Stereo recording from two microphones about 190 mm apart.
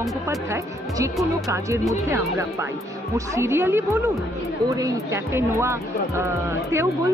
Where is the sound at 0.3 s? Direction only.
15° right (ahead or behind).